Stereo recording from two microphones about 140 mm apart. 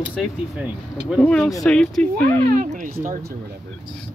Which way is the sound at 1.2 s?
5° left (ahead or behind).